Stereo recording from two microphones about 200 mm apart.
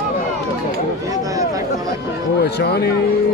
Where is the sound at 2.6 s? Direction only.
55° left (ahead or behind).